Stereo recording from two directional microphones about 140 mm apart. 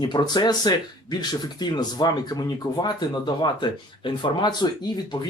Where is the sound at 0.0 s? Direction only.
30° left (ahead or behind).